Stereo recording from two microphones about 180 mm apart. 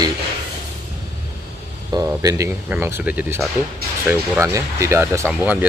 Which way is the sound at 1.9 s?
20° right (ahead or behind).